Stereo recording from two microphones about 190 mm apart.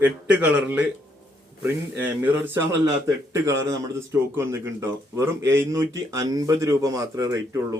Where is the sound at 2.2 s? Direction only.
10° right (ahead or behind).